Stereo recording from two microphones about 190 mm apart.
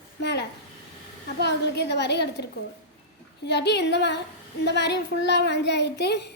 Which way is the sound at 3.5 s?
65° left (ahead or behind).